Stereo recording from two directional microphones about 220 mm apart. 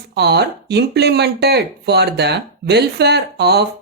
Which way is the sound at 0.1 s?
50° right (ahead or behind).